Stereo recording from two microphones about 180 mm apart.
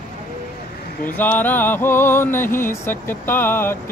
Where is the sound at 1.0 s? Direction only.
10° left (ahead or behind).